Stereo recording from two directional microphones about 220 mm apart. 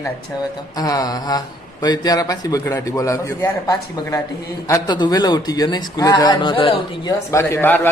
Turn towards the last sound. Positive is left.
turn(degrees=10)  # may be behind; listen again after turning